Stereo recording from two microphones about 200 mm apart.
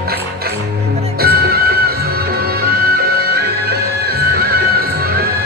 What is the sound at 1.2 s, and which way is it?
Music, 50° right (ahead or behind).